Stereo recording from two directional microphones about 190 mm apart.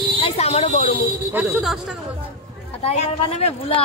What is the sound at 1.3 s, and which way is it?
Speech, 10° right (ahead or behind).